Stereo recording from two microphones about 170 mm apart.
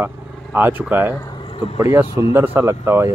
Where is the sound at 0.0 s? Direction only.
10° right (ahead or behind).